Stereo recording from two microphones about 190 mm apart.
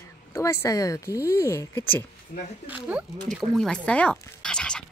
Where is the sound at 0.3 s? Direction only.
15° left (ahead or behind).